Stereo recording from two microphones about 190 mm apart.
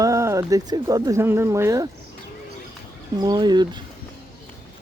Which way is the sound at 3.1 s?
20° right (ahead or behind).